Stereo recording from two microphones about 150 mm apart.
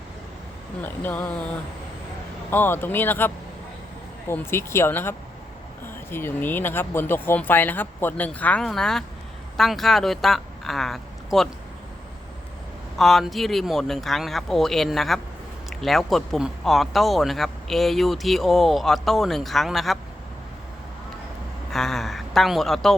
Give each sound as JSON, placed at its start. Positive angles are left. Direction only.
{"t": 0.8, "sound": "speech", "side_deg": 10}
{"t": 2.5, "sound": "speech", "side_deg": 15}
{"t": 13.0, "sound": "speech", "side_deg": 0}
{"t": 21.7, "sound": "speech", "side_deg": 0}